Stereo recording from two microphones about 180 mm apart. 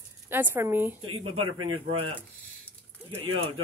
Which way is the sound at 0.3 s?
10° right (ahead or behind).